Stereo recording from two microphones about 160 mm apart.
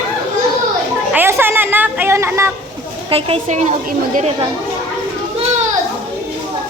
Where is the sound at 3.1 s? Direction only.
35° right (ahead or behind).